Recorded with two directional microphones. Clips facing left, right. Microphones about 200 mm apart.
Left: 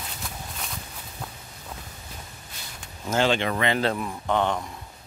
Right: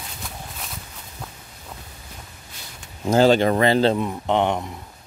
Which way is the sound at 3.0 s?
40° right (ahead or behind).